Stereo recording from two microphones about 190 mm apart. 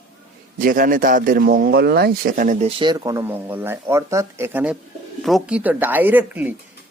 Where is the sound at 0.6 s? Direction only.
45° right (ahead or behind).